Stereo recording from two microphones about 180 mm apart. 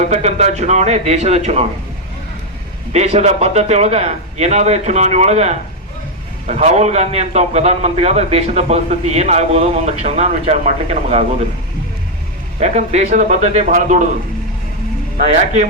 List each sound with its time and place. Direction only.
0.0 s a man's voice: 35° right (ahead or behind)
2.9 s a man's voice: 35° right (ahead or behind)
12.5 s a man's voice: 40° right (ahead or behind)
15.2 s a man's voice: 35° right (ahead or behind)